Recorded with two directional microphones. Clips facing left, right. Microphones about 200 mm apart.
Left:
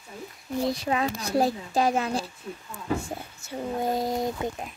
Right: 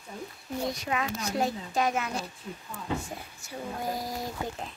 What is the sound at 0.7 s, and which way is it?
Speech, 30° left (ahead or behind).